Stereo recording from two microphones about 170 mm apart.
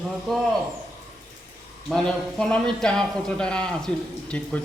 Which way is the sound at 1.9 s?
5° left (ahead or behind).